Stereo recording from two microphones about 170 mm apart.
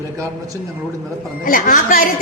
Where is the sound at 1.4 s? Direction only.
55° left (ahead or behind).